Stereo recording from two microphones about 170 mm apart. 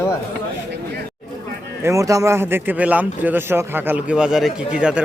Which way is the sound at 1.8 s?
20° right (ahead or behind).